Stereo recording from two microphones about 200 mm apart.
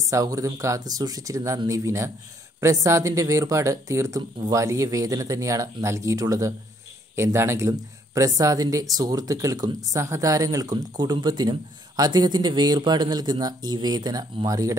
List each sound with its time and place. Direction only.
0.1 s speech: 15° right (ahead or behind)